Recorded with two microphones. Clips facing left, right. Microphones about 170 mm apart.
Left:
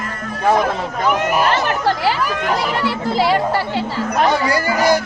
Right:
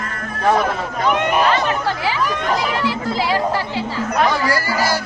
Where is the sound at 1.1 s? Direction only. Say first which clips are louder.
Even; 5° left (ahead or behind).